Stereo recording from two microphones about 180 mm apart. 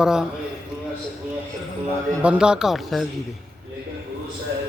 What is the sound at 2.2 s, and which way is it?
Speech, 5° right (ahead or behind).